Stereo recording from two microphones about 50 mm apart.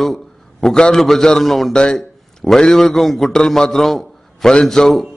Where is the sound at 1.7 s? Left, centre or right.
Centre.